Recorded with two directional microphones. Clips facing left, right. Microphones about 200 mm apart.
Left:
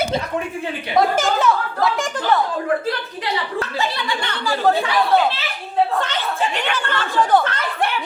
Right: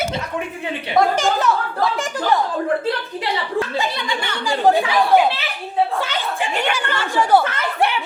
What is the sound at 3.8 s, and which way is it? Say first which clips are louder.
Speech: even; 15° right (ahead or behind).